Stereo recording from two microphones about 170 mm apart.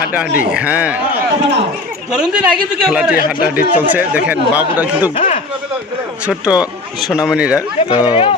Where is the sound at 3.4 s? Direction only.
60° left (ahead or behind).